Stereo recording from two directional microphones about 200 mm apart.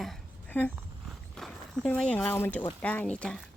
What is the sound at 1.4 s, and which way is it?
Speech, centre (ahead or behind).